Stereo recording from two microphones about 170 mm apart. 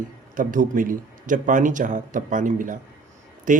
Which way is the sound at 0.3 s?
50° right (ahead or behind).